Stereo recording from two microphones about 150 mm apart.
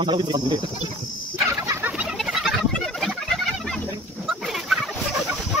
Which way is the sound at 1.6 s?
15° right (ahead or behind).